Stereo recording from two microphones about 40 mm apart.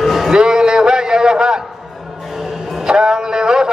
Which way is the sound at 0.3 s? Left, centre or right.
Centre.